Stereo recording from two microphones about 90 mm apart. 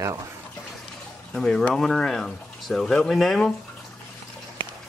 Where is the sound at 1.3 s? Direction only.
5° left (ahead or behind).